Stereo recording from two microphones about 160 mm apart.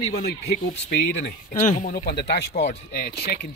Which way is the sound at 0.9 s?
85° left.